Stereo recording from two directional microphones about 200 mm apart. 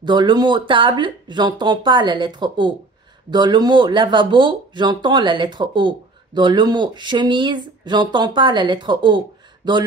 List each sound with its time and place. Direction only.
0.0 s speech: 20° right (ahead or behind)